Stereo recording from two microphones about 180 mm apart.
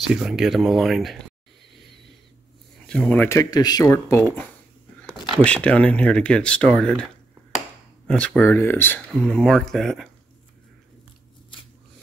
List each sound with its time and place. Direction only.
0.0 s speech: centre (ahead or behind)
2.9 s speech: 5° left (ahead or behind)
3.3 s speech: 20° left (ahead or behind); by 7.1 s 5° left (ahead or behind)
8.1 s speech: 5° left (ahead or behind)